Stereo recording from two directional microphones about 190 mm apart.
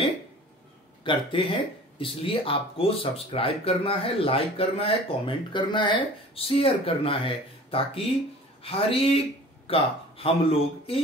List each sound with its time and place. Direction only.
1.0 s speech: 25° left (ahead or behind)